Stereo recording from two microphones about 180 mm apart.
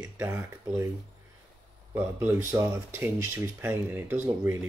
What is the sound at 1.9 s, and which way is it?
Speech, 10° right (ahead or behind).